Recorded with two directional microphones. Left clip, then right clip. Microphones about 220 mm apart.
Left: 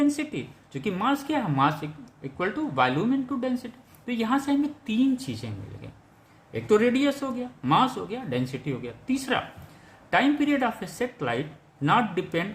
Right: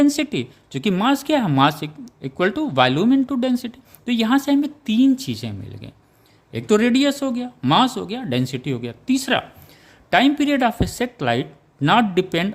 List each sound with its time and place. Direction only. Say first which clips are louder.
0.0 s speech: right 7 dB; 50° right (ahead or behind)